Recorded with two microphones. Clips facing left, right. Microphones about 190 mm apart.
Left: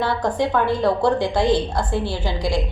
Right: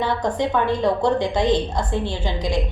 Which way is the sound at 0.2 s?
5° left (ahead or behind).